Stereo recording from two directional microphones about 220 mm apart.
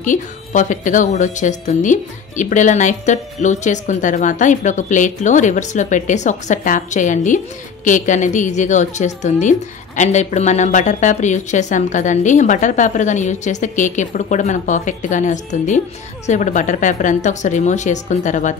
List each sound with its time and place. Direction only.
0.0 s speech: 35° left (ahead or behind)